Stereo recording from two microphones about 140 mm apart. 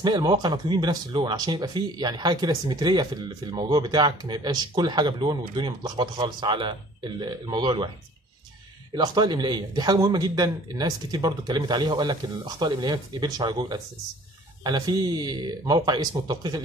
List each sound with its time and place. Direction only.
0.0 s speech: 30° right (ahead or behind)
8.9 s speech: 30° right (ahead or behind)